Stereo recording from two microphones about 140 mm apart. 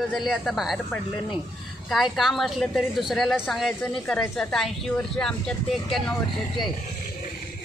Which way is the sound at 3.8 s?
10° left (ahead or behind).